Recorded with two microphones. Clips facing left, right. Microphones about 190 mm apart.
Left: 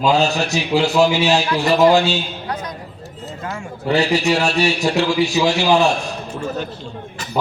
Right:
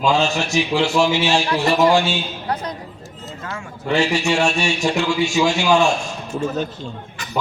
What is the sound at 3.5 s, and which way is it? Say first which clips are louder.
A man's voice: left 1 dB; 35° left (ahead or behind).